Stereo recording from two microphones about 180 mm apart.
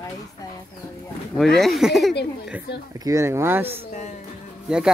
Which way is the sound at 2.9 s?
20° right (ahead or behind).